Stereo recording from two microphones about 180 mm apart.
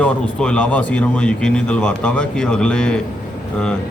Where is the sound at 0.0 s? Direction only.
5° left (ahead or behind).